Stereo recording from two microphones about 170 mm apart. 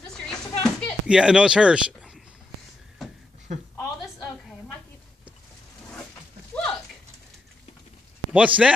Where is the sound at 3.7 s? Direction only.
20° left (ahead or behind).